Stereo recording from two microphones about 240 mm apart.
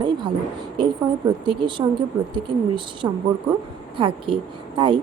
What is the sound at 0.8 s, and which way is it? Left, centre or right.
A woman's voice, centre.